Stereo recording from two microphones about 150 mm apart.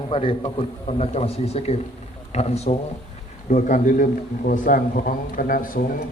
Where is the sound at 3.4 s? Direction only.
55° left (ahead or behind).